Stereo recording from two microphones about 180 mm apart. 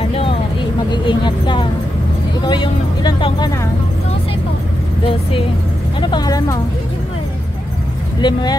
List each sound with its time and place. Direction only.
0.1 s vehicle: 30° left (ahead or behind)
1.0 s speech: 25° left (ahead or behind)
5.9 s speech: 25° left (ahead or behind)
8.2 s speech: 25° left (ahead or behind)